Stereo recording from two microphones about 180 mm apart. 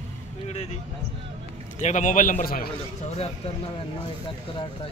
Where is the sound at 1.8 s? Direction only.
40° left (ahead or behind).